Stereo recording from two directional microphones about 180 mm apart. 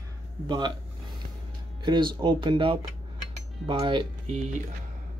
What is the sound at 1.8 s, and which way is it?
Speech, 25° right (ahead or behind).